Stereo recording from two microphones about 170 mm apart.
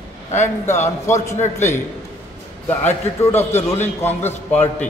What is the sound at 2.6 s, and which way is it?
A man's voice, 15° left (ahead or behind).